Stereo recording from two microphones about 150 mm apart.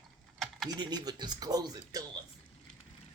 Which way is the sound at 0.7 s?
25° right (ahead or behind).